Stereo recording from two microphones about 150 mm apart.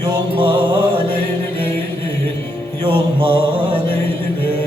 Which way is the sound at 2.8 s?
35° right (ahead or behind).